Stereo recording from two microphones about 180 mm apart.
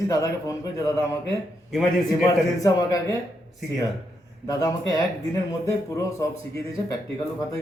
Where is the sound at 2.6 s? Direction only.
20° left (ahead or behind).